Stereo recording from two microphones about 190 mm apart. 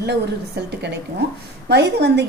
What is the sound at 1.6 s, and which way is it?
Speech, 60° right (ahead or behind).